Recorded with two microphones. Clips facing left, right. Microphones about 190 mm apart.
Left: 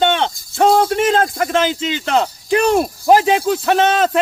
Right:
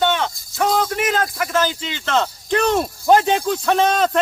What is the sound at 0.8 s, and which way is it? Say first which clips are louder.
A man's voice: left 5 dB; 30° left (ahead or behind).